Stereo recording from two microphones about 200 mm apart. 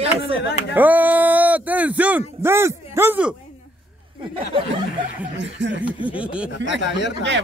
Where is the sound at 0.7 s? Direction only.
10° right (ahead or behind).